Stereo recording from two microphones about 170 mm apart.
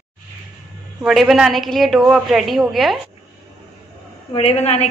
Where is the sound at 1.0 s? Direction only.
Centre (ahead or behind).